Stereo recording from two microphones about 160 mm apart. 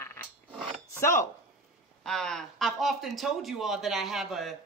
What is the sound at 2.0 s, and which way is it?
Speech, 5° left (ahead or behind).